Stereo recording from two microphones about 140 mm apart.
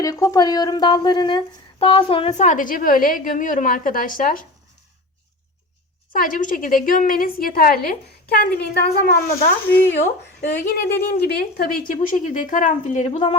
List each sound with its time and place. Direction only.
0.0 s speech: 25° left (ahead or behind); by 2.5 s 40° left (ahead or behind)
2.5 s speech: 75° left (ahead or behind)
6.1 s a woman's voice: 75° left (ahead or behind); by 9.5 s 90° left
10.6 s speech: 90° left; by 13.1 s 60° left (ahead or behind)